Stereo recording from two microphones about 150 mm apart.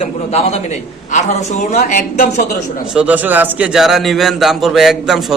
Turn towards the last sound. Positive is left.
turn(degrees=0)  # may be behind; listen again after turning